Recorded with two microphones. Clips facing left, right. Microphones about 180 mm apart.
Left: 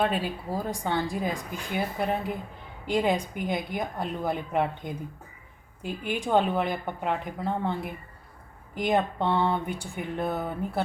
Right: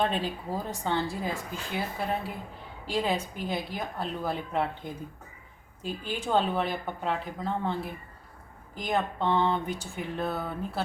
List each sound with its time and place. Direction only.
0.0 s a woman's voice: 10° left (ahead or behind)